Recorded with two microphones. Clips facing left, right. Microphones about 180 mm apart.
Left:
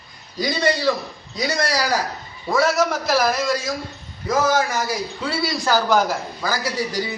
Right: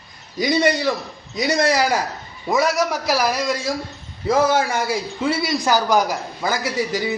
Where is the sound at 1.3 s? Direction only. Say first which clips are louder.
Right 4 dB; 20° right (ahead or behind).